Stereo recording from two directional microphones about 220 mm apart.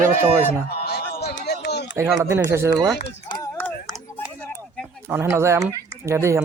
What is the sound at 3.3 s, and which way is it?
Run, 10° left (ahead or behind).